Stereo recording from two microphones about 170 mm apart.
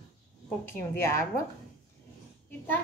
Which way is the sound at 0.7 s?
15° left (ahead or behind).